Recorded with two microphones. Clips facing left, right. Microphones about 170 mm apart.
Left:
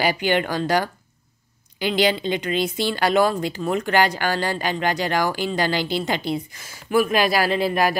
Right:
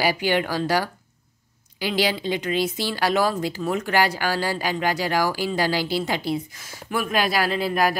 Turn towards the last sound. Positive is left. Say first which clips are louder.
# left 2 dB
turn(degrees=0)  # may be behind; listen again after turning